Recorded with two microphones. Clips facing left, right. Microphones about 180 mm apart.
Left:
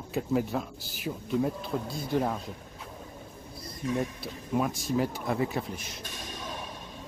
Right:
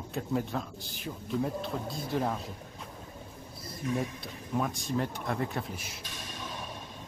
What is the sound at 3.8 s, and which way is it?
Speech, 30° left (ahead or behind).